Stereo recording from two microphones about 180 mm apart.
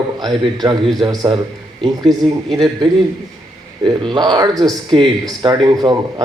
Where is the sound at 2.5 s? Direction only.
25° right (ahead or behind).